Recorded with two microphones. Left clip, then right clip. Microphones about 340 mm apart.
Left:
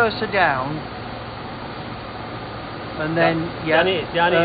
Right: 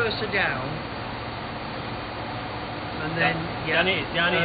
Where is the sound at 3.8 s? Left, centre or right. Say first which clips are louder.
Left 4 dB; left.